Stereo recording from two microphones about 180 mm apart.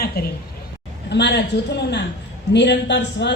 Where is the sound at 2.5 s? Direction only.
70° left (ahead or behind).